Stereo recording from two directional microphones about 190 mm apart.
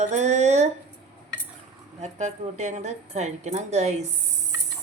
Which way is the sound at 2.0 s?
35° right (ahead or behind).